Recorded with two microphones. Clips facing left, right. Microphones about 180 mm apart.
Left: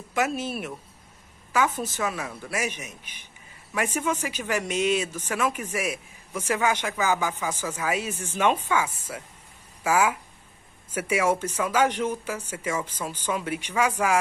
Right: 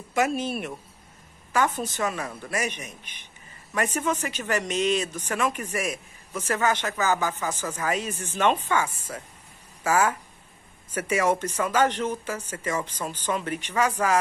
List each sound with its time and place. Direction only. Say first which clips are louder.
0.1 s a man's voice: right 2 dB; centre (ahead or behind)